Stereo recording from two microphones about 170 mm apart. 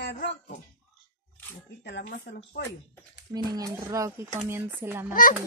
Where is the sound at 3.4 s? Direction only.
20° right (ahead or behind).